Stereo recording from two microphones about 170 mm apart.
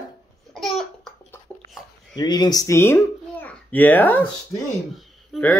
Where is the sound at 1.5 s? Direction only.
5° left (ahead or behind).